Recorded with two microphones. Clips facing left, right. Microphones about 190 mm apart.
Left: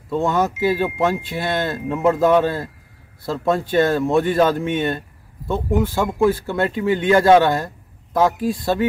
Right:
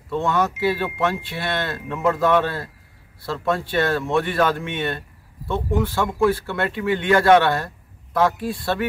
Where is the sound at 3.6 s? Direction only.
45° left (ahead or behind).